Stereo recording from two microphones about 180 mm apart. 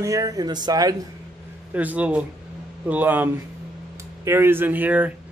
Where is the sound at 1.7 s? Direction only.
10° right (ahead or behind).